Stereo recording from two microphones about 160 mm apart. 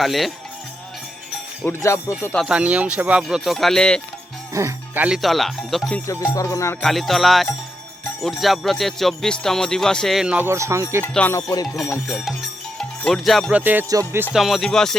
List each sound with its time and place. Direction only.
0.0 s speech: centre (ahead or behind)
1.6 s speech: 15° left (ahead or behind)
2.5 s speech: 10° right (ahead or behind)
4.5 s speech: 20° right (ahead or behind)
5.0 s speech: centre (ahead or behind)
6.1 s speech: 20° left (ahead or behind)
6.8 s speech: centre (ahead or behind); by 11.0 s 20° right (ahead or behind)
11.0 s speech: 10° left (ahead or behind)
11.3 s speech: 20° left (ahead or behind)
12.0 s speech: centre (ahead or behind)
13.6 s music: 10° right (ahead or behind)
14.3 s speech: centre (ahead or behind)